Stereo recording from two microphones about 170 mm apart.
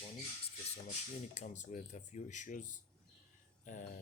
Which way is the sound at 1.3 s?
45° left (ahead or behind).